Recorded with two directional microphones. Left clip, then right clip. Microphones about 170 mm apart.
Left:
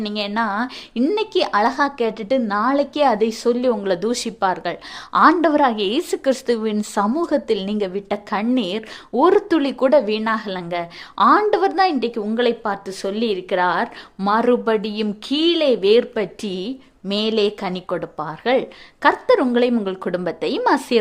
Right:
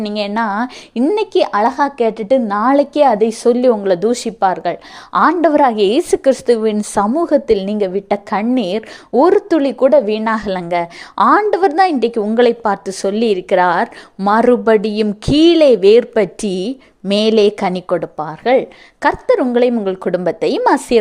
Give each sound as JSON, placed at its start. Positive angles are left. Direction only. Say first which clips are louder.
{"t": 0.0, "sound": "a woman's voice", "louder": "right 4 dB", "side_deg": -25}
{"t": 10.3, "sound": "speech", "louder": "right 7 dB", "side_deg": -35}
{"t": 19.0, "sound": "speech", "louder": "right 1 dB", "side_deg": -35}
{"t": 19.4, "sound": "a woman's voice", "louder": "right 4 dB", "side_deg": -20}